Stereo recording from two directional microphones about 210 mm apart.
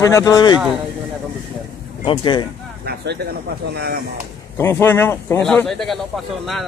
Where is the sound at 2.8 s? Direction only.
50° right (ahead or behind).